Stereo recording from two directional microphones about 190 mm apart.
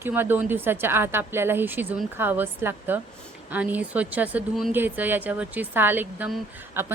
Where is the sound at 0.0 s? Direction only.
10° right (ahead or behind).